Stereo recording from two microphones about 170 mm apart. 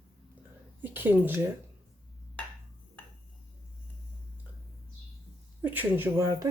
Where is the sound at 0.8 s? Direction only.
10° right (ahead or behind).